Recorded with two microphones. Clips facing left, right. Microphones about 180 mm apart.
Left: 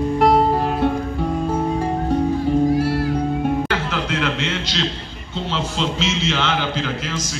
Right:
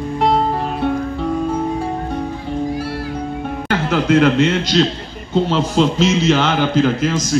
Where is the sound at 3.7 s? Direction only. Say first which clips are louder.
Right 7 dB; 45° right (ahead or behind).